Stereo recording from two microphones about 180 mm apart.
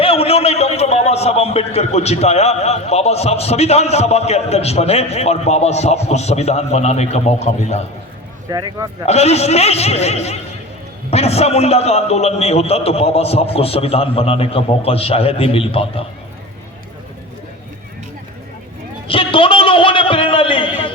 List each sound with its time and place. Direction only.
0.0 s a man's voice: 30° left (ahead or behind)
8.4 s speech: 20° right (ahead or behind)
9.0 s a man's voice: 35° left (ahead or behind)
19.0 s a man's voice: 30° left (ahead or behind)